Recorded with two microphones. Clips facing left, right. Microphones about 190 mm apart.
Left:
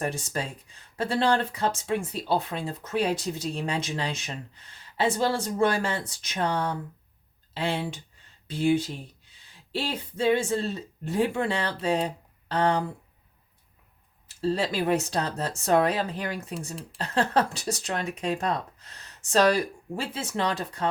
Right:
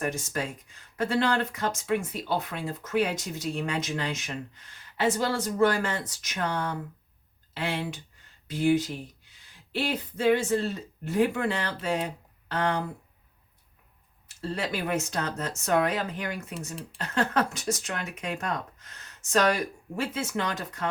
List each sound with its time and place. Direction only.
0.0 s speech: 30° left (ahead or behind)
14.4 s speech: 30° left (ahead or behind)